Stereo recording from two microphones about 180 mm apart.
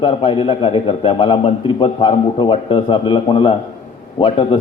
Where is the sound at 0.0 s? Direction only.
30° left (ahead or behind).